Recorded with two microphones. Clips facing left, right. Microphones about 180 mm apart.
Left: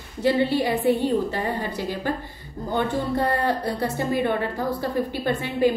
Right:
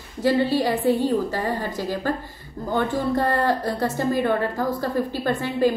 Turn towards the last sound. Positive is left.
turn(degrees=20)  # may be behind; listen again after turning